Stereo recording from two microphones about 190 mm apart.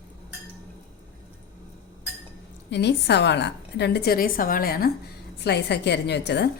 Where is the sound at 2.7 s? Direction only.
65° left (ahead or behind).